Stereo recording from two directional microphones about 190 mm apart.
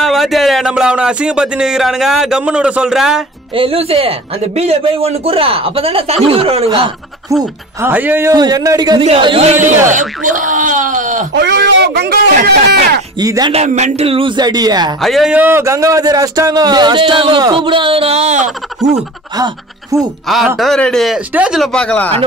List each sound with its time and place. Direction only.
0.0 s speech: centre (ahead or behind)
3.5 s a man's voice: 30° right (ahead or behind)
7.8 s a man's voice: 10° right (ahead or behind); by 9.6 s 30° right (ahead or behind)
9.8 s speech: 40° right (ahead or behind)
11.3 s speech: 60° right (ahead or behind)
13.2 s speech: 20° right (ahead or behind)
13.5 s speech: 35° right (ahead or behind)
15.0 s speech: centre (ahead or behind); by 18.5 s 35° right (ahead or behind)
19.3 s speech: 20° right (ahead or behind)
20.2 s speech: centre (ahead or behind)